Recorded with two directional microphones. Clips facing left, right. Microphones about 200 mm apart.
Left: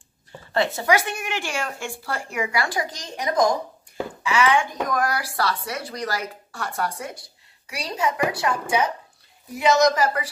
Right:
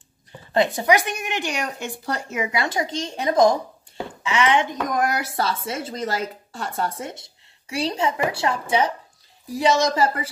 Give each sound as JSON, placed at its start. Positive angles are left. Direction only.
{"t": 0.5, "sound": "speech", "side_deg": -15}